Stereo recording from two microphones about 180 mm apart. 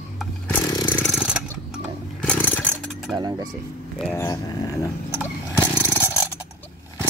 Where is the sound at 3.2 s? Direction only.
20° right (ahead or behind).